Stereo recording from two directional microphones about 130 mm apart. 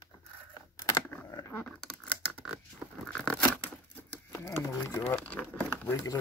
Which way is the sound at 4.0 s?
15° left (ahead or behind).